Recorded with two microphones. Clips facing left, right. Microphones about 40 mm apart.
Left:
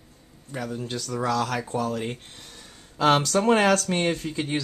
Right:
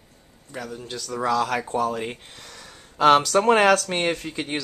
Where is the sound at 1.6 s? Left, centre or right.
Right.